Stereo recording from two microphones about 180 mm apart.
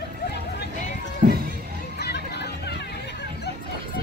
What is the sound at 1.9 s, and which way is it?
Hubbub, 65° left (ahead or behind).